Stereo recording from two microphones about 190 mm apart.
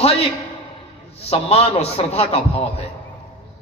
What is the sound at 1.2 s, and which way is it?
A man's voice, 30° left (ahead or behind).